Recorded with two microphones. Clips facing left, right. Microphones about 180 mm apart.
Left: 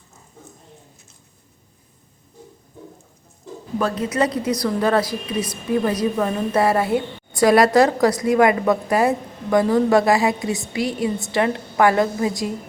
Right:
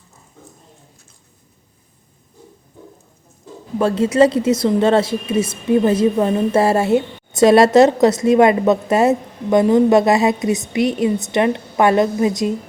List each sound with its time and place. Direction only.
3.8 s a woman's voice: 25° right (ahead or behind)